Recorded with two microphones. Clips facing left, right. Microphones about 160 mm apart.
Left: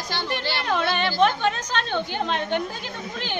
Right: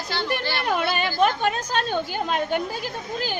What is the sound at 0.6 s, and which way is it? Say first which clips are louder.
A woman's voice: left 1 dB; 10° right (ahead or behind).